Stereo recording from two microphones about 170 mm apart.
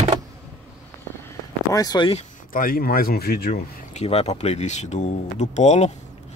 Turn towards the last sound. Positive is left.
turn(degrees=40)  # may be behind; listen again after turning